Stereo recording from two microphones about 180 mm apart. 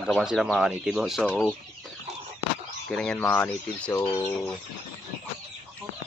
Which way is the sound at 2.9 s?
5° left (ahead or behind).